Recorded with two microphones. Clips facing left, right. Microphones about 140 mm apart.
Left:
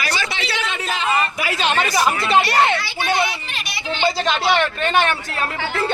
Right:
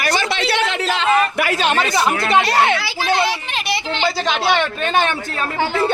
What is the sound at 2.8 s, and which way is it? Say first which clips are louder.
A child's voice: right 2 dB; 85° right.